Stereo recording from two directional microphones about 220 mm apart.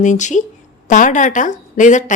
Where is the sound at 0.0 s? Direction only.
35° left (ahead or behind).